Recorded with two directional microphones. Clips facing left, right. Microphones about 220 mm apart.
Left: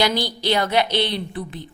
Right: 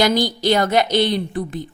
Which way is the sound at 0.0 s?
45° right (ahead or behind).